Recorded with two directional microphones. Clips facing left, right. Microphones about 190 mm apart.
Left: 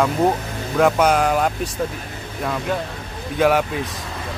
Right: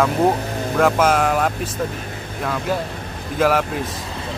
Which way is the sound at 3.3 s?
Centre (ahead or behind).